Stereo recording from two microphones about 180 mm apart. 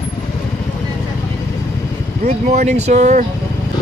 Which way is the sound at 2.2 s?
40° right (ahead or behind).